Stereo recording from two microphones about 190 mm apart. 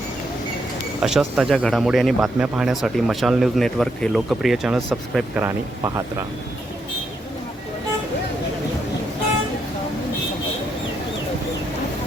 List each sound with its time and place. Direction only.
1.0 s speech: 5° right (ahead or behind)